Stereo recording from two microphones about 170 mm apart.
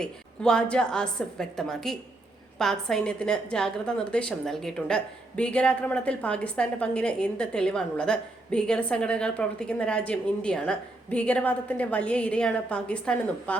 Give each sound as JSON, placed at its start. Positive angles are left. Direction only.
{"t": 0.0, "sound": "a woman's voice", "side_deg": 5}